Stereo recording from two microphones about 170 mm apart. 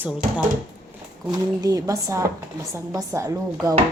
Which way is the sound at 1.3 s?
20° right (ahead or behind).